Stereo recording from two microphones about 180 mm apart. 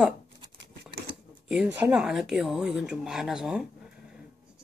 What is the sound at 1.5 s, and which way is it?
Speech, 5° right (ahead or behind).